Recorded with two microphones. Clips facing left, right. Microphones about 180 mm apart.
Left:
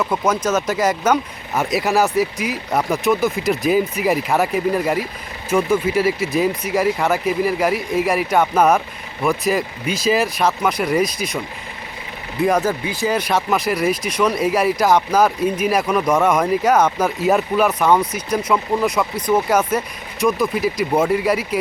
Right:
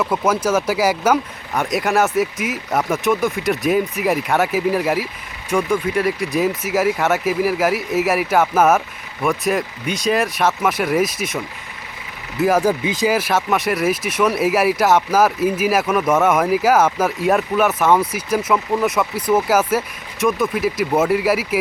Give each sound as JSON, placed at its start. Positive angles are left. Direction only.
{"t": 0.0, "sound": "speech", "side_deg": -5}
{"t": 12.4, "sound": "speech", "side_deg": -5}
{"t": 12.8, "sound": "speech", "side_deg": -20}
{"t": 13.1, "sound": "speech", "side_deg": -5}